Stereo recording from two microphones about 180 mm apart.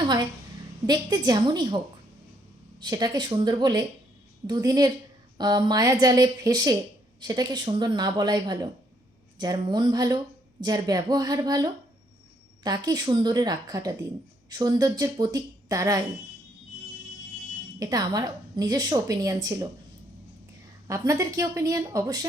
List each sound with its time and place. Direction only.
0.9 s a woman's voice: 20° right (ahead or behind)
2.8 s a woman's voice: 20° right (ahead or behind)
17.7 s a woman's voice: 20° right (ahead or behind)
20.8 s a woman's voice: 20° right (ahead or behind)